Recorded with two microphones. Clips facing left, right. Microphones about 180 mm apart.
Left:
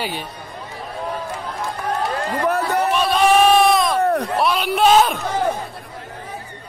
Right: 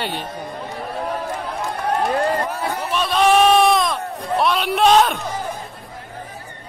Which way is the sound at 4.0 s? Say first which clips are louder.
Left 11 dB; 70° left (ahead or behind).